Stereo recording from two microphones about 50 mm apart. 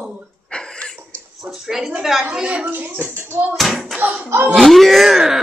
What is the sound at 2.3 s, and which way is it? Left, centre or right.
Speech, right.